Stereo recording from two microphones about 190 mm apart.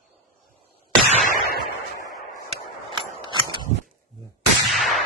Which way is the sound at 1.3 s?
55° left (ahead or behind).